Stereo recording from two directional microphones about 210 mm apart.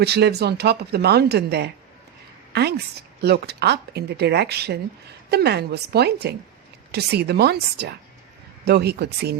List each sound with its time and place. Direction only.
0.0 s a woman's voice: 50° right (ahead or behind)